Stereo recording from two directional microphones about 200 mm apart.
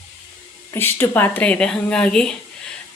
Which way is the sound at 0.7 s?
10° left (ahead or behind).